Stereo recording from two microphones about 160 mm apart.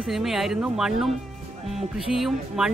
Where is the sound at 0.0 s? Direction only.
Centre (ahead or behind).